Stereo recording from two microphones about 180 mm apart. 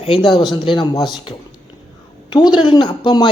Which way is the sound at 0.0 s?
30° left (ahead or behind).